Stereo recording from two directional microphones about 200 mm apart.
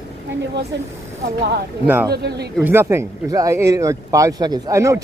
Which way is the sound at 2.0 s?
55° right (ahead or behind).